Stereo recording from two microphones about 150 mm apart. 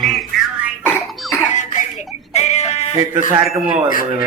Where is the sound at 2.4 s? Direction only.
50° left (ahead or behind).